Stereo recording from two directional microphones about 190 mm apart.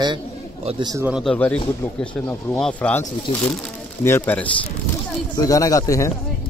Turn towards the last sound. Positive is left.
turn(degrees=15)  # may be behind; listen again after turning